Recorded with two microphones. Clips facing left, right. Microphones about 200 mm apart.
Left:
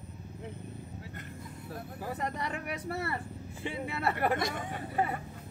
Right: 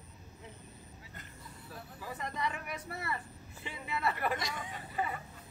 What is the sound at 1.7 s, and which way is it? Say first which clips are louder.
Speech: left 6 dB; 60° left (ahead or behind).